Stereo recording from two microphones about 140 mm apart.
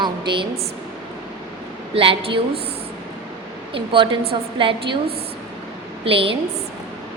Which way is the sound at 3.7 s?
40° right (ahead or behind).